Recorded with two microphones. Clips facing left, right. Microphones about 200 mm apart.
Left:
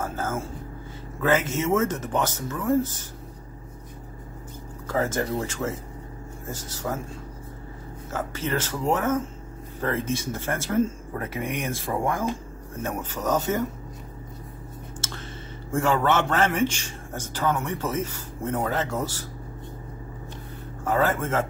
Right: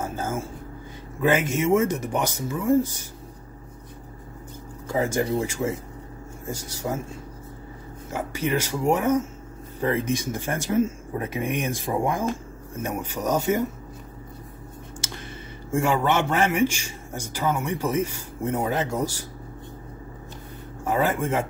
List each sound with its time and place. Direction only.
0.0 s a sound: 15° right (ahead or behind)
1.2 s a man's voice: 15° right (ahead or behind)
4.8 s a man's voice: 15° right (ahead or behind)
8.1 s a man's voice: 15° right (ahead or behind)
15.0 s a sound: 15° right (ahead or behind)
15.7 s a man's voice: 15° right (ahead or behind)
20.8 s a man's voice: 15° right (ahead or behind)